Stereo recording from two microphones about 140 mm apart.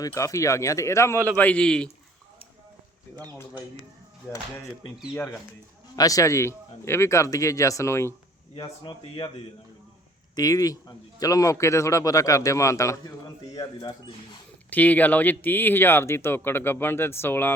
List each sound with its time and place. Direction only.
0.0 s a man's voice: 20° left (ahead or behind)
1.4 s speech: 10° left (ahead or behind)
6.0 s a man's voice: 25° left (ahead or behind)
8.5 s speech: 35° left (ahead or behind)
10.3 s a man's voice: 25° left (ahead or behind)
14.7 s speech: 10° left (ahead or behind)